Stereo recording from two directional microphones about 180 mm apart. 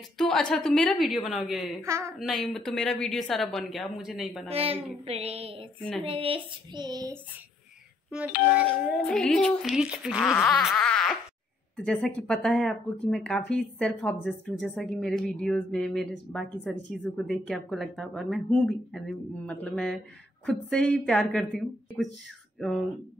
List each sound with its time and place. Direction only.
0.2 s speech: 5° left (ahead or behind)
1.8 s a woman's voice: 15° right (ahead or behind)
2.1 s speech: centre (ahead or behind)
4.5 s child singing: 35° right (ahead or behind)
6.0 s a sound: 30° right (ahead or behind)
8.5 s speech: centre (ahead or behind)